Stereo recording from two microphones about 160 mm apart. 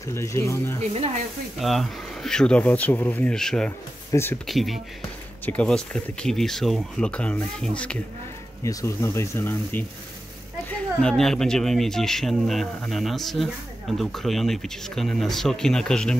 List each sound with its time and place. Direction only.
0.1 s speech: 15° left (ahead or behind)
1.6 s speech: centre (ahead or behind)
4.1 s speech: 15° left (ahead or behind)
4.5 s speech: centre (ahead or behind)